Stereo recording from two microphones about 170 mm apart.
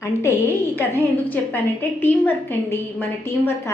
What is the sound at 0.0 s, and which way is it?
A woman's voice, 15° left (ahead or behind).